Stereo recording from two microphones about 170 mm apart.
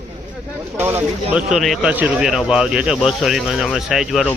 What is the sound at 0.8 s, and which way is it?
Speech, 10° right (ahead or behind).